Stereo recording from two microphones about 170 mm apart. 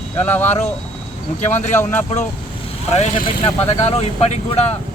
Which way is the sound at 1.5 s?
45° left (ahead or behind).